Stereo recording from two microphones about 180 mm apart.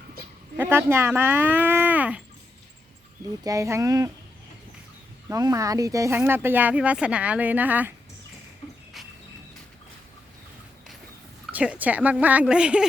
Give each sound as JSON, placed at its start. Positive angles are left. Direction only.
{"t": 0.5, "sound": "speech", "side_deg": -10}
{"t": 3.4, "sound": "speech", "side_deg": -20}
{"t": 5.3, "sound": "speech", "side_deg": -20}
{"t": 11.5, "sound": "speech", "side_deg": -10}